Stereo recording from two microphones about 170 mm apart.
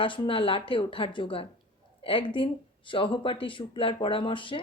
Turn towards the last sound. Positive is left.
turn(degrees=30)  # may be behind; listen again after turning